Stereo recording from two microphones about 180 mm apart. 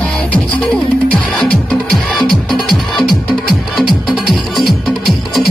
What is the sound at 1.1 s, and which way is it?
Music, 5° left (ahead or behind).